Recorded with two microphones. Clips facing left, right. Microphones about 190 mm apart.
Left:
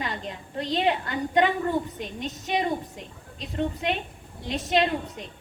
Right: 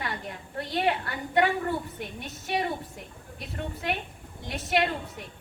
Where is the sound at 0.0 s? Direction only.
20° left (ahead or behind).